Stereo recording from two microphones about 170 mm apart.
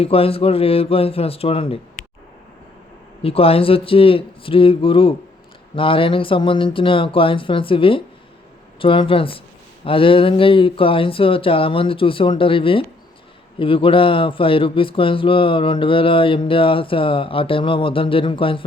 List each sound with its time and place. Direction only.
0.0 s a man's voice: 35° left (ahead or behind)
3.2 s a man's voice: 35° left (ahead or behind)